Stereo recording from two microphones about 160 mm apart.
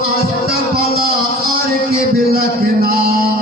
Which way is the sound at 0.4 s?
70° right (ahead or behind).